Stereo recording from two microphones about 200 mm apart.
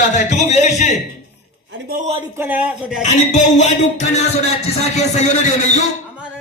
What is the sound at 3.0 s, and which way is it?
A man's voice, 35° left (ahead or behind).